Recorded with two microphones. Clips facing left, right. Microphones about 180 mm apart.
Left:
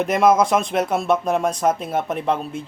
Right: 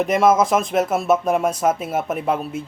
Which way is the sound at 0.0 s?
Centre (ahead or behind).